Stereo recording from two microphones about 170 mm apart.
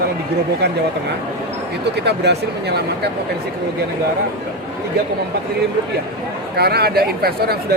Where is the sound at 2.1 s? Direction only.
75° right (ahead or behind).